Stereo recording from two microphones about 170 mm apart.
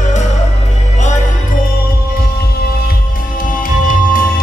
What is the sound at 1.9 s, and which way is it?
Music, 60° left (ahead or behind).